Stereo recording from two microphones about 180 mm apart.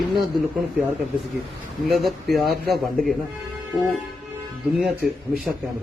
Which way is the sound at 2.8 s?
Centre (ahead or behind).